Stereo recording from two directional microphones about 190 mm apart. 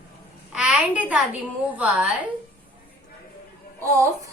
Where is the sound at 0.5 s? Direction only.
5° right (ahead or behind).